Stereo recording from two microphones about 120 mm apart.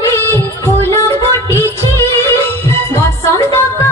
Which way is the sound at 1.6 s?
20° left (ahead or behind).